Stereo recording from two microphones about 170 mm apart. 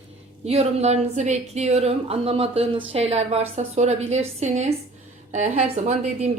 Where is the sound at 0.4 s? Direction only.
35° right (ahead or behind).